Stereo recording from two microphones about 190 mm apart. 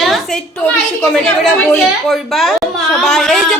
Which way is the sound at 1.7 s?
Centre (ahead or behind).